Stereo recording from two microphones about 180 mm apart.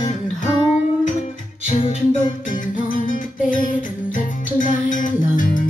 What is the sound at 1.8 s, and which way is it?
Music, 40° left (ahead or behind).